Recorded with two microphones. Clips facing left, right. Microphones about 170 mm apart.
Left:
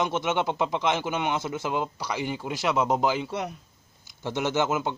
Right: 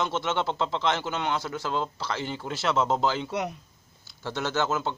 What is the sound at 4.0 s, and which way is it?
Speech, 15° left (ahead or behind).